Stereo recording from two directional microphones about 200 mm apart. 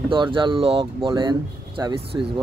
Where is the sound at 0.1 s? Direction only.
25° right (ahead or behind).